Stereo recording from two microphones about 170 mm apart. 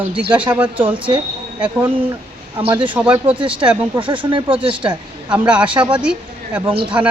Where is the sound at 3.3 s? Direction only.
30° right (ahead or behind).